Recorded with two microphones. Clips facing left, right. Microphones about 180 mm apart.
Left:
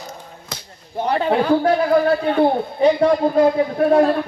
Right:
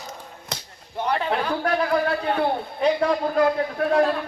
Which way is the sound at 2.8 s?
25° left (ahead or behind).